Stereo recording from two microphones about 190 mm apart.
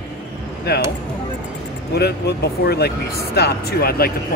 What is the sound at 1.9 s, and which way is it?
Speech, 60° left (ahead or behind).